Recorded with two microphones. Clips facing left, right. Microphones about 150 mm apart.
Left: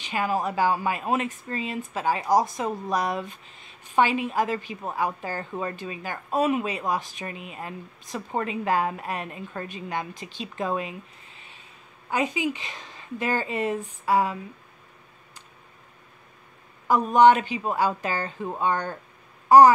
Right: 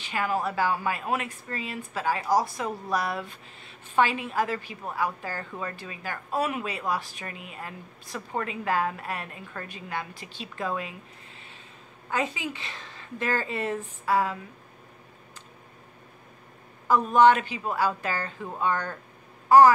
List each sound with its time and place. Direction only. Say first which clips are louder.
0.0 s a woman's voice: left 2 dB; 20° left (ahead or behind)
16.8 s a woman's voice: left 2 dB; 15° left (ahead or behind)